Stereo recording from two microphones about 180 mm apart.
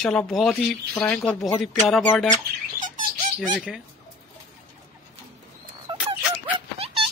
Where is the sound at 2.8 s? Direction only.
45° right (ahead or behind).